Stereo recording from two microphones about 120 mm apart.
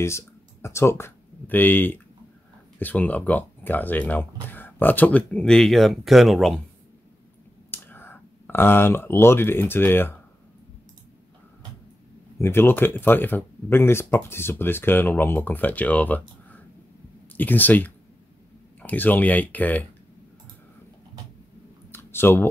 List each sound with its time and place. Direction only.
0.0 s speech: 20° left (ahead or behind); by 6.6 s centre (ahead or behind)
7.7 s speech: 15° left (ahead or behind)
12.4 s speech: 20° left (ahead or behind)
21.9 s a sound: 20° left (ahead or behind)